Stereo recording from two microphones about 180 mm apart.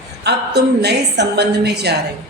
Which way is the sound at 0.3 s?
65° right (ahead or behind).